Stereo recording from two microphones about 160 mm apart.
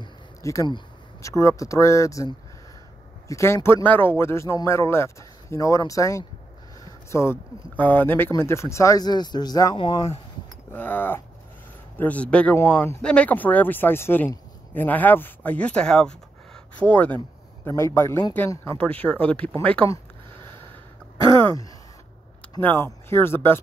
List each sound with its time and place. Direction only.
0.0 s speech: 20° left (ahead or behind)
10.7 s speech: 10° left (ahead or behind)
22.6 s speech: 10° left (ahead or behind)